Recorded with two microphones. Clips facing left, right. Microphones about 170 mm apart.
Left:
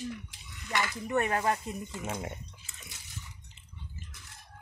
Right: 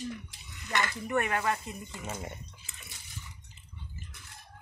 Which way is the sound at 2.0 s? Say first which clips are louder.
Left 2 dB; 10° left (ahead or behind).